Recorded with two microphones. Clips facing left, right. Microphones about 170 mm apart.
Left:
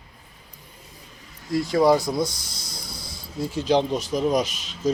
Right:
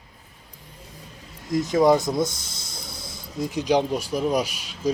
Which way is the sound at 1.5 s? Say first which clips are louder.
Even; 20° right (ahead or behind).